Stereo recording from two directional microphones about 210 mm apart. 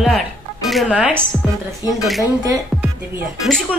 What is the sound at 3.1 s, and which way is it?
Speech, centre (ahead or behind).